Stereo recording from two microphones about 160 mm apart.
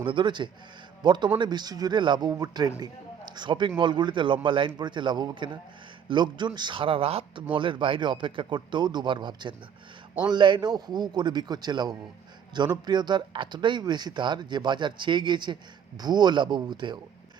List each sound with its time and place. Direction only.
0.0 s speech: 30° right (ahead or behind)